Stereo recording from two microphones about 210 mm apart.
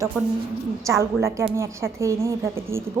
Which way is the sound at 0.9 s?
15° right (ahead or behind).